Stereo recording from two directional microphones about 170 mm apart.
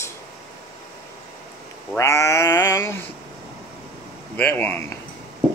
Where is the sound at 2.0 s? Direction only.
20° left (ahead or behind).